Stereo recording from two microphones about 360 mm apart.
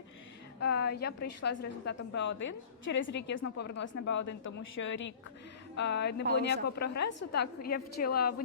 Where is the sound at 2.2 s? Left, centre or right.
Left.